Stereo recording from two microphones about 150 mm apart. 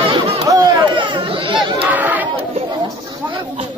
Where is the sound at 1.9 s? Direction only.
10° right (ahead or behind).